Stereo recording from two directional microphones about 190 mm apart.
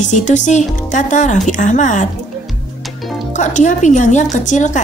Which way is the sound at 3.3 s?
40° left (ahead or behind).